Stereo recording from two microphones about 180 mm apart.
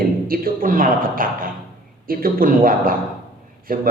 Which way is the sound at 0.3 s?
50° right (ahead or behind).